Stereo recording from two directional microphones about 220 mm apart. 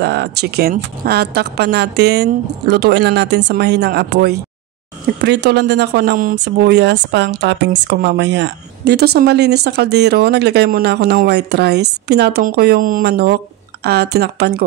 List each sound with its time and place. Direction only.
0.0 s a woman's voice: 50° right (ahead or behind)